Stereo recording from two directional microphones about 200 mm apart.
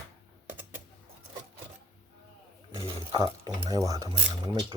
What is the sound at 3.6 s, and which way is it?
Speech, 15° right (ahead or behind).